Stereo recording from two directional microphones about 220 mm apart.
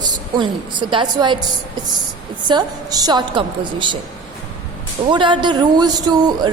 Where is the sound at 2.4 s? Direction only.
20° right (ahead or behind).